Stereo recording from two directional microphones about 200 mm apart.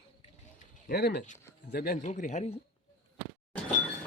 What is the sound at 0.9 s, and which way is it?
A man's voice, 55° left (ahead or behind).